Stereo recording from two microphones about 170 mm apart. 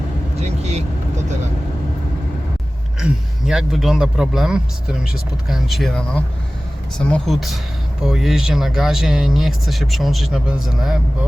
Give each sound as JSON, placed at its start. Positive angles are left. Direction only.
{"t": 0.3, "sound": "vehicle", "side_deg": -40}
{"t": 3.0, "sound": "speech", "side_deg": -5}